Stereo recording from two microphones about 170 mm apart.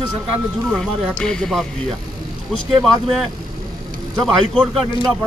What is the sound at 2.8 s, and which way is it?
Speech, centre (ahead or behind).